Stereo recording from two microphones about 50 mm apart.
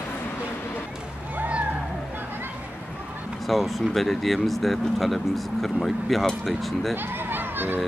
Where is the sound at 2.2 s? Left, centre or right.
Right.